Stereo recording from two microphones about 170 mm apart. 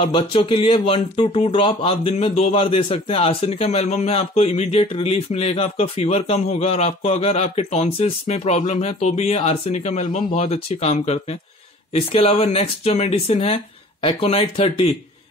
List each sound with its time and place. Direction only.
0.0 s speech: 30° left (ahead or behind)